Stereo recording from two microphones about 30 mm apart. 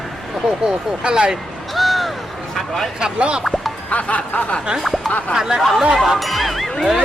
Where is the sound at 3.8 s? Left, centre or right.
Left.